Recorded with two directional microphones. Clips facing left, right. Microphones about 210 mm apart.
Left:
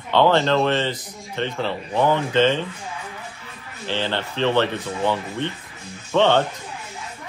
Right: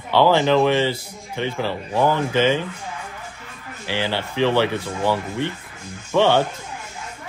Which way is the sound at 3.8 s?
10° right (ahead or behind).